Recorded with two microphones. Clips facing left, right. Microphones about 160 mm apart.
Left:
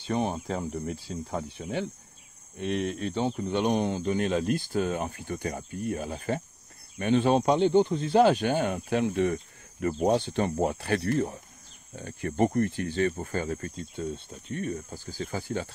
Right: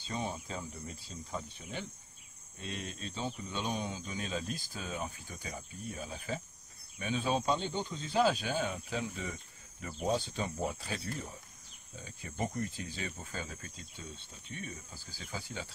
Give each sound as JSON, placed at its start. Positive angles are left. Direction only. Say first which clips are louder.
{"t": 0.0, "sound": "speech", "louder": "left 10 dB", "side_deg": 70}
{"t": 2.6, "sound": "speech", "louder": "left 13 dB", "side_deg": 85}